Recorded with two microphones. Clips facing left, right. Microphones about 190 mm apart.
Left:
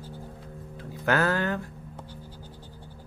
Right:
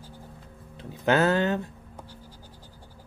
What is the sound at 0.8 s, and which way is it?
Speech, 20° right (ahead or behind).